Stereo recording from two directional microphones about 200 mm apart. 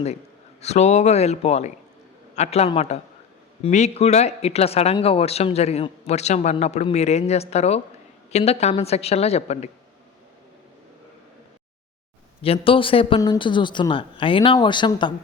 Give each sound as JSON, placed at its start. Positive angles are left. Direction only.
{"t": 0.6, "sound": "speech", "side_deg": 35}
{"t": 12.4, "sound": "a man's voice", "side_deg": 25}